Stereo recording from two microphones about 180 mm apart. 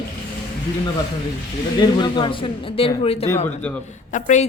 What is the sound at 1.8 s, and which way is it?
A man's voice, 25° left (ahead or behind).